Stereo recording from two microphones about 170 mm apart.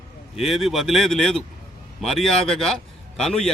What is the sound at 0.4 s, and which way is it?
A man's voice, centre (ahead or behind).